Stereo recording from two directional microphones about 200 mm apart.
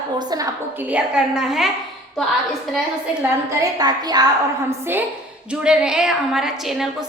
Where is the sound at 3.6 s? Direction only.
20° right (ahead or behind).